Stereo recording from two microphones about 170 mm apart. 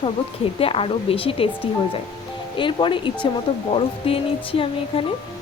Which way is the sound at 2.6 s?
30° left (ahead or behind).